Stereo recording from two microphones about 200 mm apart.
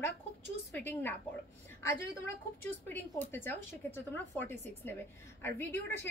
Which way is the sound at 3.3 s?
10° left (ahead or behind).